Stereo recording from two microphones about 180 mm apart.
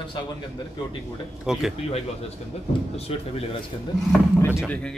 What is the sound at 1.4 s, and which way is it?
Speech, centre (ahead or behind).